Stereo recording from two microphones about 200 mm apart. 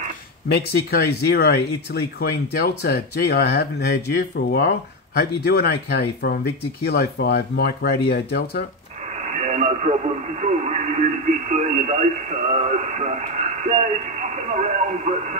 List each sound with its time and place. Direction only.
0.5 s speech: 55° left (ahead or behind)
9.1 s speech: 35° right (ahead or behind)